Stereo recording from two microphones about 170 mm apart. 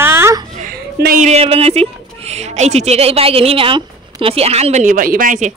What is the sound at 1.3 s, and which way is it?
Speech, 35° right (ahead or behind).